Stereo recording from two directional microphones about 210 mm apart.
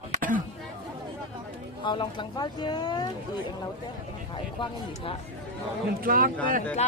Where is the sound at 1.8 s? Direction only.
20° left (ahead or behind).